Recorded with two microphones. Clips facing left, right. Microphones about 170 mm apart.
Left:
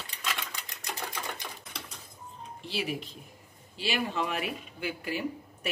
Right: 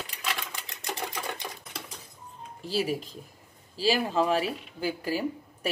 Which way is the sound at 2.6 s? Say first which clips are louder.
Right 5 dB; 40° right (ahead or behind).